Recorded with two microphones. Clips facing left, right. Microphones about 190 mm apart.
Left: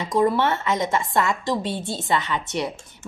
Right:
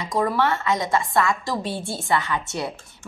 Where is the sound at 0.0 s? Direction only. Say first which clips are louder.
Left 2 dB; 25° left (ahead or behind).